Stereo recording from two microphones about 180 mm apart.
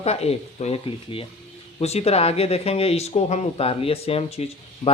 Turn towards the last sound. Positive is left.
turn(degrees=35)  # may be behind; listen again after turning